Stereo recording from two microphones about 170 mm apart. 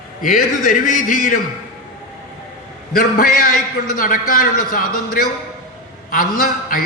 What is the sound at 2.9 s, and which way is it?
A man's voice, 60° left (ahead or behind).